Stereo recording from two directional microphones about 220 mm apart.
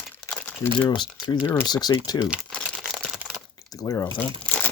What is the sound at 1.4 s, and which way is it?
Speech, 15° left (ahead or behind).